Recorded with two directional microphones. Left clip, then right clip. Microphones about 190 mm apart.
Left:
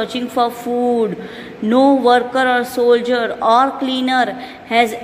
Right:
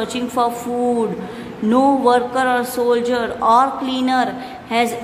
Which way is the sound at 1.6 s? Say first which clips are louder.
Left 2 dB; 15° left (ahead or behind).